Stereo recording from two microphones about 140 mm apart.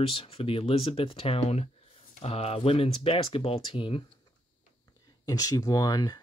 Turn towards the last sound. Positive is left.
turn(degrees=25)  # may be behind; listen again after turning